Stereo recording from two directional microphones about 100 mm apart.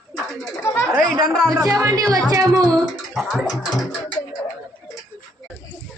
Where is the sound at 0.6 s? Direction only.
25° left (ahead or behind).